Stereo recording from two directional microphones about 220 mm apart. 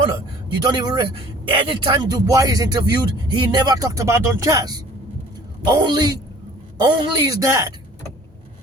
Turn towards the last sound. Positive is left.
turn(degrees=-15)  # may be behind; listen again after turning